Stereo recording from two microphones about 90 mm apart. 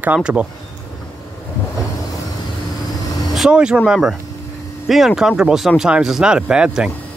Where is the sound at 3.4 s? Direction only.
10° right (ahead or behind).